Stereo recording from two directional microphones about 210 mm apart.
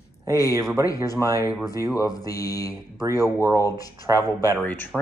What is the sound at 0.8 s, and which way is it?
Speech, 15° left (ahead or behind).